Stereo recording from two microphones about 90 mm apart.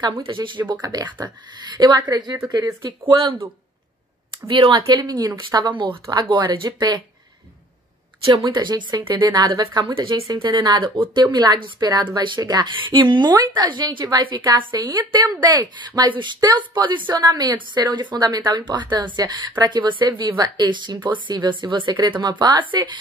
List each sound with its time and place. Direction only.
0.2 s speech: 65° right (ahead or behind)
0.8 s a woman's voice: 45° right (ahead or behind)
3.1 s speech: 60° right (ahead or behind)
4.5 s speech: 65° right (ahead or behind)
4.8 s a woman's voice: 50° right (ahead or behind)
8.5 s a woman's voice: 55° right (ahead or behind)
12.4 s a woman's voice: 45° right (ahead or behind)
17.1 s a woman's voice: 50° right (ahead or behind)